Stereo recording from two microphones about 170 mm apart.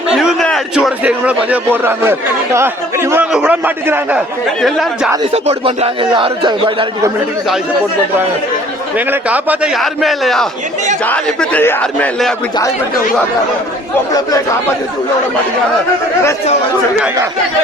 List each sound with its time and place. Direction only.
0.1 s a man's voice: centre (ahead or behind)
4.6 s a man's voice: centre (ahead or behind)
5.3 s a man's voice: 35° right (ahead or behind)
9.0 s a man's voice: 10° right (ahead or behind); by 12.3 s 10° left (ahead or behind)